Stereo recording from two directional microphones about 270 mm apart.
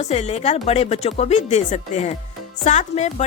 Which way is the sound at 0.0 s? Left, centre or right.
Left.